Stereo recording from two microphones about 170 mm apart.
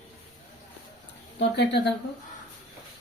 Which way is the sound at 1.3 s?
85° left.